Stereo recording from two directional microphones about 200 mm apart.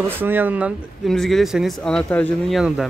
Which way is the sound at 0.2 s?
10° right (ahead or behind).